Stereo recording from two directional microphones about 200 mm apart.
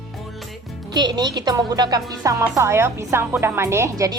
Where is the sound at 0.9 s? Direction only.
20° right (ahead or behind).